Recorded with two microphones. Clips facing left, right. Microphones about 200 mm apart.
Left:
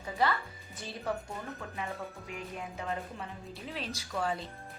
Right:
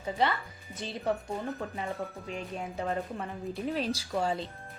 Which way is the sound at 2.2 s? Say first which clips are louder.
Right 4 dB; 30° right (ahead or behind).